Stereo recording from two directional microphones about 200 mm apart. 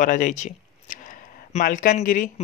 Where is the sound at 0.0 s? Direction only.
40° left (ahead or behind).